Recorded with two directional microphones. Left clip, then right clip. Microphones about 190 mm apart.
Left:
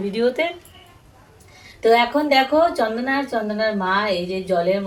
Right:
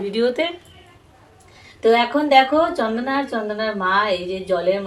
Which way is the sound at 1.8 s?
20° right (ahead or behind).